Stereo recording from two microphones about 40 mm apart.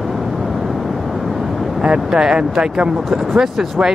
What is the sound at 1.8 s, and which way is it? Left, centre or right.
Speech, centre.